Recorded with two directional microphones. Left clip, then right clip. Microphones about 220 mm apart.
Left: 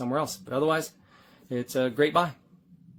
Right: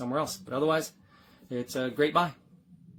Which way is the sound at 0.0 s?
20° left (ahead or behind).